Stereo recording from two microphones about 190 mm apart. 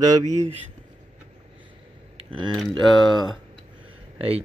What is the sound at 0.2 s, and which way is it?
Speech, 40° right (ahead or behind).